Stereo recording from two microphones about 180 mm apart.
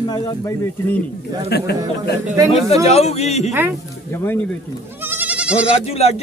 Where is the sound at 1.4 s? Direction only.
65° left (ahead or behind).